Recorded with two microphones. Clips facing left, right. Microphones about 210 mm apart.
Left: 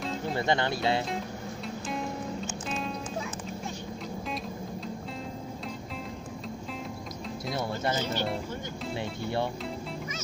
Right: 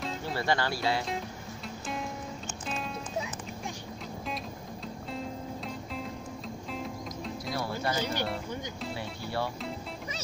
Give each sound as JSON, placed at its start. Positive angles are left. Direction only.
{"t": 0.3, "sound": "speech", "side_deg": 20}
{"t": 7.5, "sound": "music", "side_deg": 20}
{"t": 8.0, "sound": "speech", "side_deg": -10}